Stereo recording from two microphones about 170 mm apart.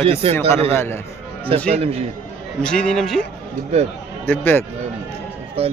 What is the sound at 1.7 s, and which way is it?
Speech, 35° right (ahead or behind).